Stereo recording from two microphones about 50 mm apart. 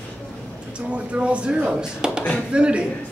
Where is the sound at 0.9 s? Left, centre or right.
Right.